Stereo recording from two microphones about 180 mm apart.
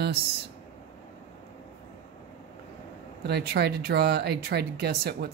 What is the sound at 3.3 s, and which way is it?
Speech, 65° right (ahead or behind).